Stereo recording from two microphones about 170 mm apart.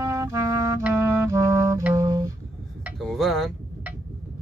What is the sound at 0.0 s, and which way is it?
Clarinet, 15° right (ahead or behind).